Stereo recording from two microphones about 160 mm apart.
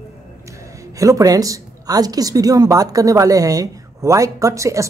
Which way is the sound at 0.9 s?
20° right (ahead or behind).